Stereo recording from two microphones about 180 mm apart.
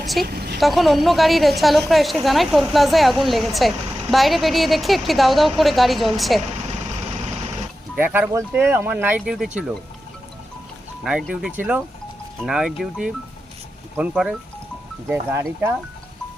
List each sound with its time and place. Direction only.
0.0 s a woman's voice: centre (ahead or behind)
0.3 s vehicle: 60° right (ahead or behind)
0.6 s a woman's voice: centre (ahead or behind)
7.9 s speech: 10° right (ahead or behind)
11.0 s a woman's voice: centre (ahead or behind)